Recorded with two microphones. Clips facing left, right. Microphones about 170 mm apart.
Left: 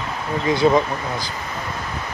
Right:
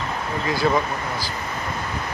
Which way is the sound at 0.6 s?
20° left (ahead or behind).